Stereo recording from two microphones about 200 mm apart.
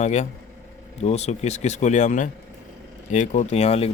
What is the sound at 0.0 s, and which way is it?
Speech, 35° left (ahead or behind).